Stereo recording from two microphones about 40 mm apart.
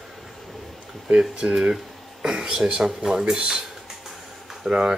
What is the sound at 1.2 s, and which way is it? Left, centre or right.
Speech, right.